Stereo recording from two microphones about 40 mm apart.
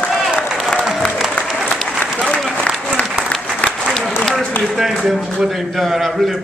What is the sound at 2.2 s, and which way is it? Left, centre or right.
Applause, centre.